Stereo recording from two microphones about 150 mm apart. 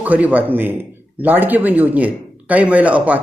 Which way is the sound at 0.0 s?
10° right (ahead or behind).